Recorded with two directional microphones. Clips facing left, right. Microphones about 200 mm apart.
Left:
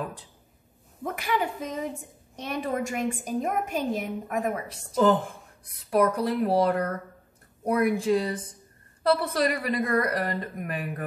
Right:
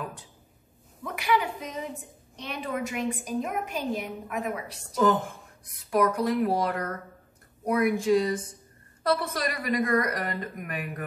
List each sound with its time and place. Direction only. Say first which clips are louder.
1.0 s a woman's voice: right 1 dB; 50° left (ahead or behind)
5.9 s a woman's voice: left 1 dB; 35° left (ahead or behind)